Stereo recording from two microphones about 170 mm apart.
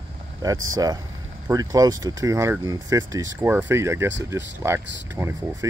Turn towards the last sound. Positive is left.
turn(degrees=-15)  # may be behind; listen again after turning